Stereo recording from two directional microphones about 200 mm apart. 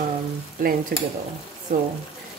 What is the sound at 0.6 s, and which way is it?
Speech, 45° right (ahead or behind).